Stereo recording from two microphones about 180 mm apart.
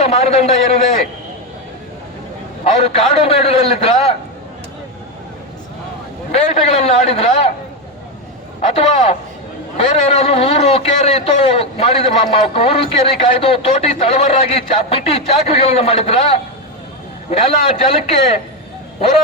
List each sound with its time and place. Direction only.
0.0 s a man's voice: 35° left (ahead or behind)
2.7 s a man's voice: 35° left (ahead or behind)
6.3 s a man's voice: 35° left (ahead or behind)
8.7 s a man's voice: 35° left (ahead or behind)